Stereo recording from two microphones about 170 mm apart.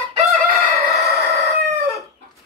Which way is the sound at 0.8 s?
Centre (ahead or behind).